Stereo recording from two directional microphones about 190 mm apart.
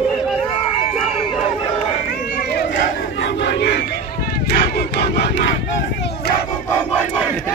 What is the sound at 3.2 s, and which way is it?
Crowd, 65° left (ahead or behind).